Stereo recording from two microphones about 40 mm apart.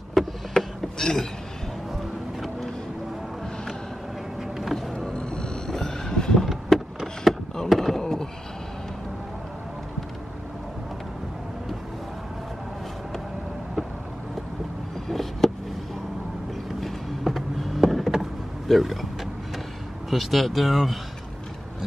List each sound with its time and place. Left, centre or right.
0.1 s vehicle: centre
4.4 s vehicle: centre
4.7 s vehicle: centre
6.4 s vehicle: centre
7.2 s a sound: centre
15.0 s a sound: centre
16.8 s vehicle: centre
18.7 s speech: centre
20.1 s speech: centre